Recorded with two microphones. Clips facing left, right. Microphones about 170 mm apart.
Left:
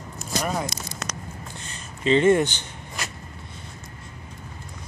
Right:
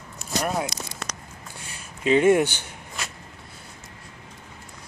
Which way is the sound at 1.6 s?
10° right (ahead or behind).